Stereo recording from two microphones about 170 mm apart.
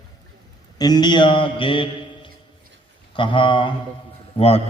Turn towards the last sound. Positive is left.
turn(degrees=35)  # may be behind; listen again after turning